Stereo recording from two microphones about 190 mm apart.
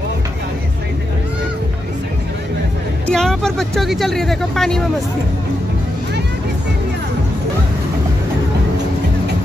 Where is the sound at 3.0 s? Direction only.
5° left (ahead or behind).